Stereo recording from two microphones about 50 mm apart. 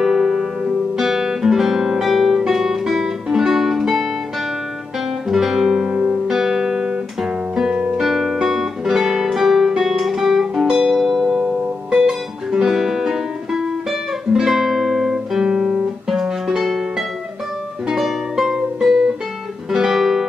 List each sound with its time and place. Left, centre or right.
0.0 s guitar: centre
5.3 s music: centre
7.7 s music: right
8.0 s music: centre
14.3 s guitar: centre
17.8 s music: centre